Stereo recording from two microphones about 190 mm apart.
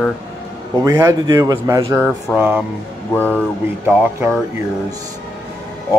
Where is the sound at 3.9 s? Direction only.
10° right (ahead or behind).